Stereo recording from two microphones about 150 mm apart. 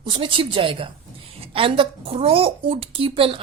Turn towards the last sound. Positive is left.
turn(degrees=-35)  # may be behind; listen again after turning